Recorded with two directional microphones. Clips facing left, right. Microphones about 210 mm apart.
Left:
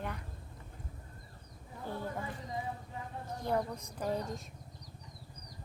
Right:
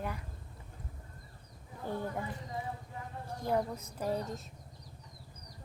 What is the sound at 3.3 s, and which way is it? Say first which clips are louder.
Speech: right 1 dB; 10° right (ahead or behind).